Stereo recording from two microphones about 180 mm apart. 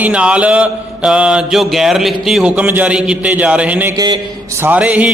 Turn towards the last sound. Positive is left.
turn(degrees=-10)  # may be behind; listen again after turning